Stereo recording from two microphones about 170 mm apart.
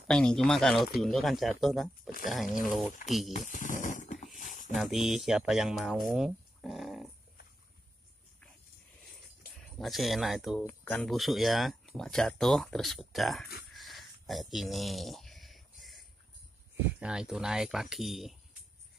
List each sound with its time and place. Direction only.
0.1 s speech: 5° left (ahead or behind)
3.3 s a sound: 50° left (ahead or behind)
4.7 s speech: centre (ahead or behind)
9.8 s speech: centre (ahead or behind)
10.6 s speech: 10° left (ahead or behind)
13.7 s a sound: centre (ahead or behind)
17.0 s speech: 5° right (ahead or behind)